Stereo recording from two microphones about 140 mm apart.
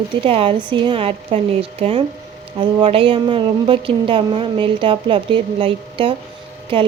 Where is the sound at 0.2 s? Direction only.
40° right (ahead or behind).